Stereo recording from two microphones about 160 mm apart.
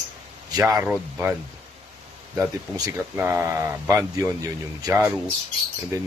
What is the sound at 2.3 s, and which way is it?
Speech, 15° right (ahead or behind).